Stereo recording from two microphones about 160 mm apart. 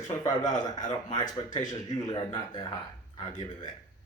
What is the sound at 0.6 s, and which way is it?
Speech, 25° left (ahead or behind).